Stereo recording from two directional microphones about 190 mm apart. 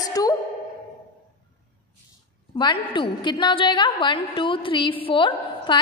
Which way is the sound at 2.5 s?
25° left (ahead or behind).